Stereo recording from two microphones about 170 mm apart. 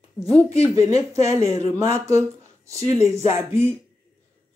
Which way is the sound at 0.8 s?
20° right (ahead or behind).